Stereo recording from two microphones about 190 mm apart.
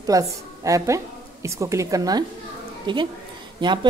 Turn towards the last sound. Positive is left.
turn(degrees=-25)  # may be behind; listen again after turning